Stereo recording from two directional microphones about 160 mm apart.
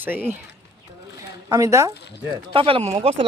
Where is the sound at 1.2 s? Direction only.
20° right (ahead or behind).